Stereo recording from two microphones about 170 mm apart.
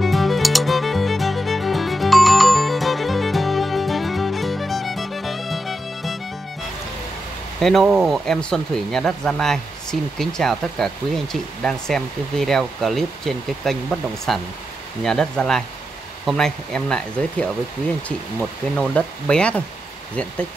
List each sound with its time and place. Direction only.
0.0 s music: centre (ahead or behind)
7.6 s speech: centre (ahead or behind)